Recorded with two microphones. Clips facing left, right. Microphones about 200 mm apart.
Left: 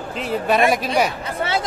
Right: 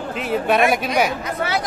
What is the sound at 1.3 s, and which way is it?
Speech, 30° left (ahead or behind).